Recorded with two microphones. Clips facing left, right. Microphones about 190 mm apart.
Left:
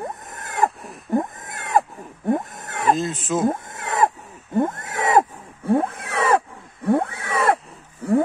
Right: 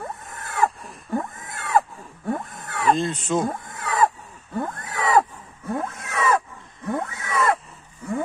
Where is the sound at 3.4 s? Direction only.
20° left (ahead or behind).